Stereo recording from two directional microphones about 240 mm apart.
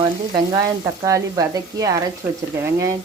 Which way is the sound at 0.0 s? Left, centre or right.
Centre.